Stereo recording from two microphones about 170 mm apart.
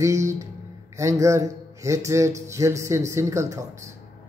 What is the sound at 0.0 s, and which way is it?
Speech, 15° right (ahead or behind).